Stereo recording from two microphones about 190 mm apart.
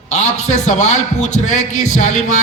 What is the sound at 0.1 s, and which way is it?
A man's voice, 35° left (ahead or behind).